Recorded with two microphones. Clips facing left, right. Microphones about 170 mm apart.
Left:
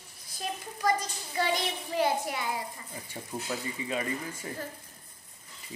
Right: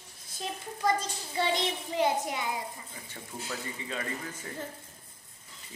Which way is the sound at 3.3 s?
30° left (ahead or behind).